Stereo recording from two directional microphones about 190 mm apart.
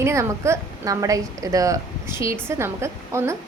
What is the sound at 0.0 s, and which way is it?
A woman's voice, 15° right (ahead or behind).